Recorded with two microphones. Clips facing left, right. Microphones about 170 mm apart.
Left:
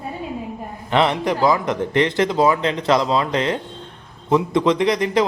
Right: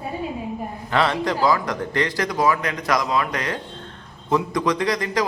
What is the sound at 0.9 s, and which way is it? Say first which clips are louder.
Speech: left 3 dB; 20° left (ahead or behind).